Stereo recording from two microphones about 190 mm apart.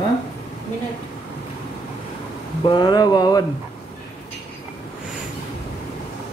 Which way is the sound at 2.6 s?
25° left (ahead or behind).